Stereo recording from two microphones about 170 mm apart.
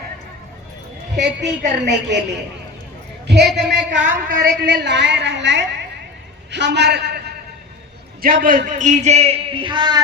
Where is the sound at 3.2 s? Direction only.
75° right (ahead or behind).